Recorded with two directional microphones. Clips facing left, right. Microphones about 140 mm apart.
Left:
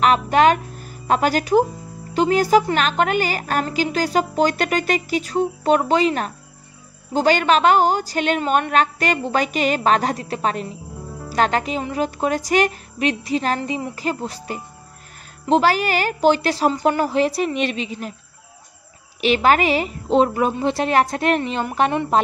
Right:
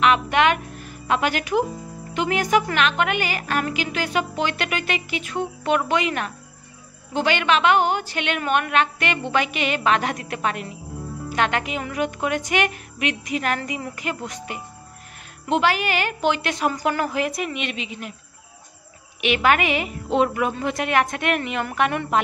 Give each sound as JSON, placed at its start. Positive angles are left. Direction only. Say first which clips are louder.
{"t": 0.0, "sound": "a woman's voice", "louder": "left 3 dB", "side_deg": 40}
{"t": 19.2, "sound": "a woman's voice", "louder": "left 3 dB", "side_deg": 35}